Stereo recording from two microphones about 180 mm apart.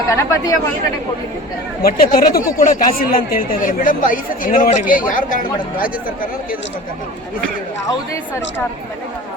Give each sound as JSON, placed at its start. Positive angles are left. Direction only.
{"t": 0.2, "sound": "speech", "side_deg": 15}
{"t": 1.8, "sound": "speech", "side_deg": 55}